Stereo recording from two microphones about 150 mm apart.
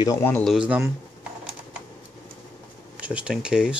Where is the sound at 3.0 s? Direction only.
10° right (ahead or behind).